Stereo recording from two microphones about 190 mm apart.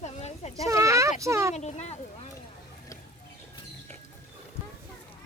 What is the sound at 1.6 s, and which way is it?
Speech, 35° left (ahead or behind).